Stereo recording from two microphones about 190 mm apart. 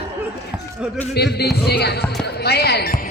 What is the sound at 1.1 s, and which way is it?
Speech, 60° left (ahead or behind).